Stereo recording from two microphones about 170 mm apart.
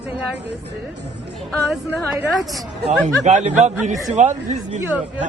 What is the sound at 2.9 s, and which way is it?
Speech, 40° right (ahead or behind).